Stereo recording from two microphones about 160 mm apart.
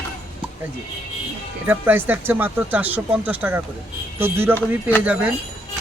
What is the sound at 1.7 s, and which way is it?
Speech, 10° right (ahead or behind).